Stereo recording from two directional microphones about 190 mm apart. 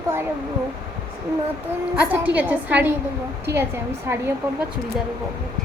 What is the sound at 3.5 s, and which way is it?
Speech, 60° right (ahead or behind).